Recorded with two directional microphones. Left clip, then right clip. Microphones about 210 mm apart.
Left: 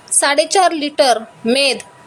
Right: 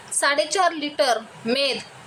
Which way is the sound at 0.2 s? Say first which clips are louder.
Left 7 dB; 25° left (ahead or behind).